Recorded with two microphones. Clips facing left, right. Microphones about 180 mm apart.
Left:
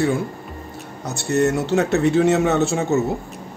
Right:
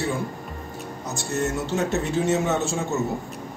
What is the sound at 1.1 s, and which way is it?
Speech, 70° left (ahead or behind).